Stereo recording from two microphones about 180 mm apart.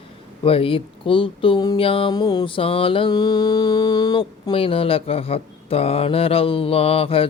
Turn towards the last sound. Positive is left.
turn(degrees=30)  # may be behind; listen again after turning